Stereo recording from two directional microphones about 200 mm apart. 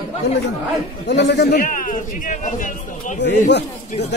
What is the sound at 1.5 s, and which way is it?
A man's voice, 40° left (ahead or behind).